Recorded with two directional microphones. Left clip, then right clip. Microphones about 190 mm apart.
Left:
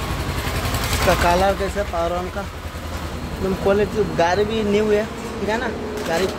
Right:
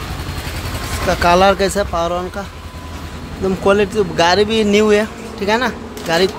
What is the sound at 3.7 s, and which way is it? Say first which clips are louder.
Speech: right 5 dB; 25° right (ahead or behind).